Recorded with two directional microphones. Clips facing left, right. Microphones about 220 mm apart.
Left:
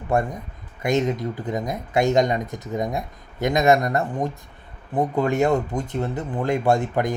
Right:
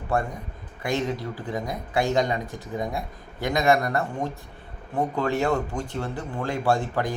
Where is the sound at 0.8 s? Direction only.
20° left (ahead or behind).